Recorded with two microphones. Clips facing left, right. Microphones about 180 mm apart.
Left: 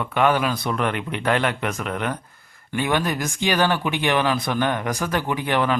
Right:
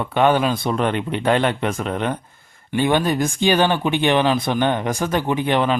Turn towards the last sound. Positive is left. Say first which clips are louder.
# right 3 dB
turn(degrees=-25)  # may be behind; listen again after turning